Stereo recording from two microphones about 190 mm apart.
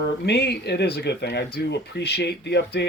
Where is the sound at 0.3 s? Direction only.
60° left (ahead or behind).